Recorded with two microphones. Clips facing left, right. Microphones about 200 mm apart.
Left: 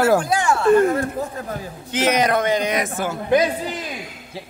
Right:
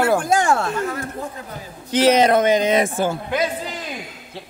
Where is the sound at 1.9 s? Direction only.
30° right (ahead or behind).